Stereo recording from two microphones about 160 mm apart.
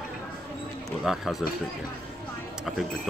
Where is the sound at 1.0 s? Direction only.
Centre (ahead or behind).